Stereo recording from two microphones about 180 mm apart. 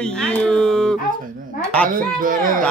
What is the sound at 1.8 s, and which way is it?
Speech, 50° right (ahead or behind).